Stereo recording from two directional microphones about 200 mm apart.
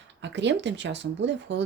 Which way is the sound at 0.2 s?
65° right (ahead or behind).